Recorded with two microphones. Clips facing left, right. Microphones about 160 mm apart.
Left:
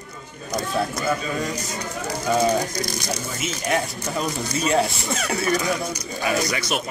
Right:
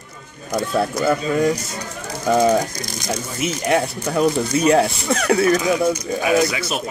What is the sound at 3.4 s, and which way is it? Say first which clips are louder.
Speech: right 6 dB; 60° right (ahead or behind).